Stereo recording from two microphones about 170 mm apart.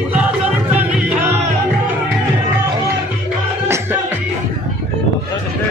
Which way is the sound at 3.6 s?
15° right (ahead or behind).